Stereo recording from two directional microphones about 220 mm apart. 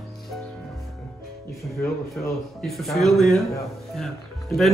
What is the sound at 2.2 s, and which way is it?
Speech, 10° left (ahead or behind).